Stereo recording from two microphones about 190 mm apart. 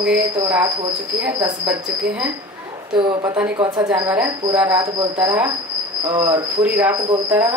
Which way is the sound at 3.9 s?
10° right (ahead or behind).